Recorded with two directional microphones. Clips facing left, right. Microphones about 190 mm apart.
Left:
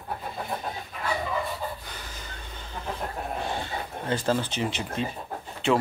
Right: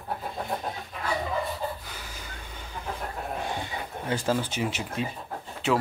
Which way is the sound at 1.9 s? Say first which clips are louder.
Even; 10° right (ahead or behind).